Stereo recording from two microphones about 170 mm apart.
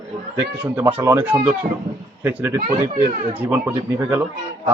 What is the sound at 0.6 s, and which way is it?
Speech, 10° right (ahead or behind).